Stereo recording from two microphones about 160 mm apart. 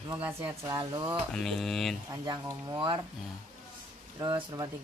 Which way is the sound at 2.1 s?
20° right (ahead or behind).